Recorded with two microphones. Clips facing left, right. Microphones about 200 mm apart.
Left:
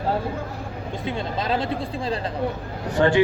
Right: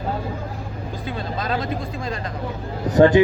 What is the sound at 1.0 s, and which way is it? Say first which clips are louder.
Speech: left 1 dB; 25° left (ahead or behind).